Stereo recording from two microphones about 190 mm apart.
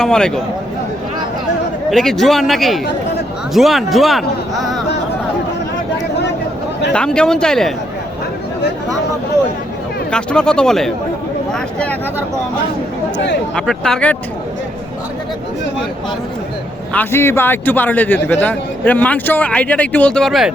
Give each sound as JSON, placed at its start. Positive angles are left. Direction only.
{"t": 0.0, "sound": "a man's voice", "side_deg": 5}
{"t": 1.9, "sound": "a man's voice", "side_deg": 0}
{"t": 6.9, "sound": "a man's voice", "side_deg": 5}
{"t": 10.1, "sound": "a man's voice", "side_deg": 5}
{"t": 13.6, "sound": "a man's voice", "side_deg": 5}
{"t": 16.9, "sound": "speech", "side_deg": 10}